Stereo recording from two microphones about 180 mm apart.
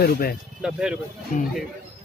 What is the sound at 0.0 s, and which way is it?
Speech, 55° left (ahead or behind).